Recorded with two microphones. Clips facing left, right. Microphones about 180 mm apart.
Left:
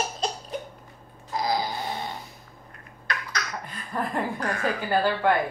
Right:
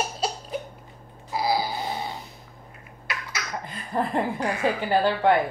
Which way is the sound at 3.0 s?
5° right (ahead or behind).